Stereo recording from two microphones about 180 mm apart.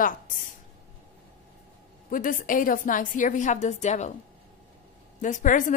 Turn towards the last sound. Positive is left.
turn(degrees=45)  # may be behind; listen again after turning